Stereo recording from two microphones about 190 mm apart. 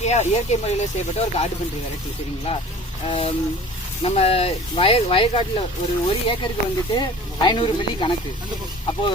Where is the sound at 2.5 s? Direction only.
30° left (ahead or behind).